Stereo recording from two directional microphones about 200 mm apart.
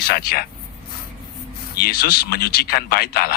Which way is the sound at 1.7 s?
50° left (ahead or behind).